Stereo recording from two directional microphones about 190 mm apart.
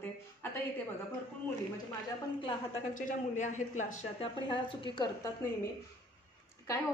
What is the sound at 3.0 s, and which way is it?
Speech, 40° left (ahead or behind).